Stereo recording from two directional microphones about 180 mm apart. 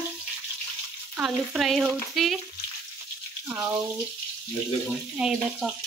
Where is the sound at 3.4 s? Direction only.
10° right (ahead or behind).